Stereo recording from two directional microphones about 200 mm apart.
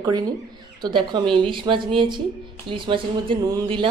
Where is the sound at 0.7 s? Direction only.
20° right (ahead or behind).